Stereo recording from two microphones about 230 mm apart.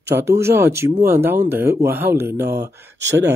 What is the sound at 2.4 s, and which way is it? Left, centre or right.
Speech, right.